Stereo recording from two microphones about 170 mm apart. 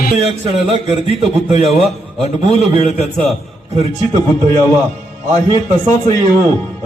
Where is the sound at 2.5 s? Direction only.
40° left (ahead or behind).